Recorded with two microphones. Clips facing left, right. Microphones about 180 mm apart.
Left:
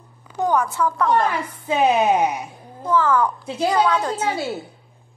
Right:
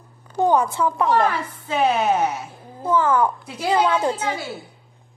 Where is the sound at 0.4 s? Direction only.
25° right (ahead or behind).